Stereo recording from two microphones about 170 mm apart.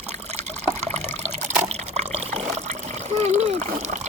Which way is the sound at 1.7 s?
40° right (ahead or behind).